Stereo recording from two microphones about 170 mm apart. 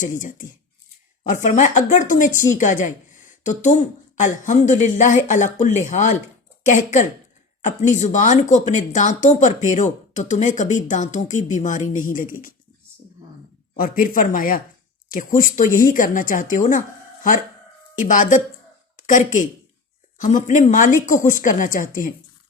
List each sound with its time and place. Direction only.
0.0 s a woman's voice: 50° left (ahead or behind)
13.7 s a woman's voice: 55° left (ahead or behind)
17.9 s a woman's voice: 50° left (ahead or behind)